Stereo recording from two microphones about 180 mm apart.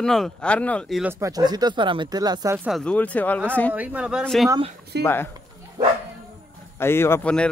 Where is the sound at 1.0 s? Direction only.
15° right (ahead or behind).